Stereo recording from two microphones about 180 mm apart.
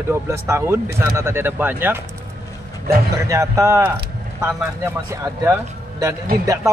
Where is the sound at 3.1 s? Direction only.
15° right (ahead or behind).